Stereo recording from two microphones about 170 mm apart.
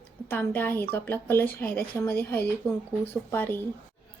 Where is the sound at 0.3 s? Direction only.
10° left (ahead or behind).